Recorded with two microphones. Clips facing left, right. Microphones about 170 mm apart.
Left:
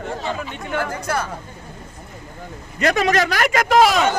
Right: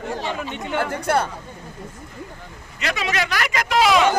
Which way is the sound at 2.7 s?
50° left (ahead or behind).